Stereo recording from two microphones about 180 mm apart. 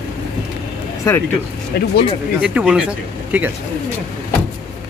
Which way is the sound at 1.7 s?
65° left (ahead or behind).